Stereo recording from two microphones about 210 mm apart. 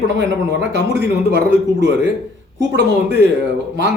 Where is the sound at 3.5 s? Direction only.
55° right (ahead or behind).